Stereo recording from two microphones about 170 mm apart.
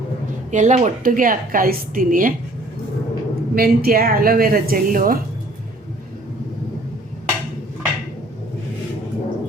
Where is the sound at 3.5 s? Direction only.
60° right (ahead or behind).